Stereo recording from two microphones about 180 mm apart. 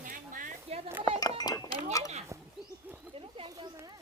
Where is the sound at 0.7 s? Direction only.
35° right (ahead or behind).